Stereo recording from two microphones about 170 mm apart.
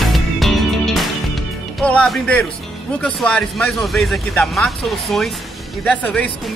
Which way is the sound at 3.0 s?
5° left (ahead or behind).